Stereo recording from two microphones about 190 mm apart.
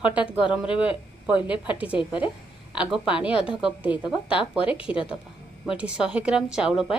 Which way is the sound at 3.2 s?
5° right (ahead or behind).